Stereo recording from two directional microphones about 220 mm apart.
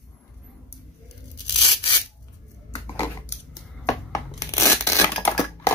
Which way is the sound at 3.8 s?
15° left (ahead or behind).